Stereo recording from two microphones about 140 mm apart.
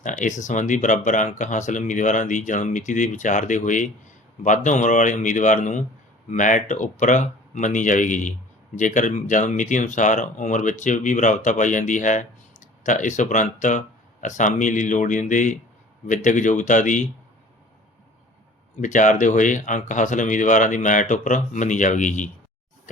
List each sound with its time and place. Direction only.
0.0 s speech: 65° left (ahead or behind)
18.8 s speech: 65° left (ahead or behind)